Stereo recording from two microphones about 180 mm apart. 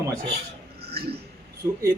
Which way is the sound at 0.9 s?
60° right (ahead or behind).